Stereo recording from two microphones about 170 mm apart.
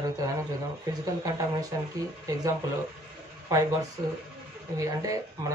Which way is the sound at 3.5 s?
20° right (ahead or behind).